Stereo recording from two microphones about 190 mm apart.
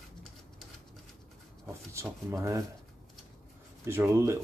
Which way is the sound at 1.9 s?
15° right (ahead or behind).